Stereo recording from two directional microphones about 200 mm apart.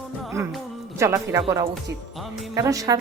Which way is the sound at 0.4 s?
15° right (ahead or behind).